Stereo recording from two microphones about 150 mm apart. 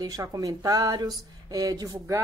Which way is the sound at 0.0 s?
25° right (ahead or behind).